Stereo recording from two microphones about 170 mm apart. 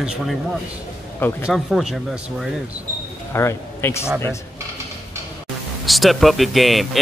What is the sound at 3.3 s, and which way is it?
Speech, 15° left (ahead or behind).